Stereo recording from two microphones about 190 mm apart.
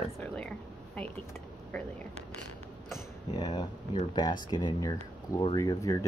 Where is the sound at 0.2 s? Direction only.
5° left (ahead or behind).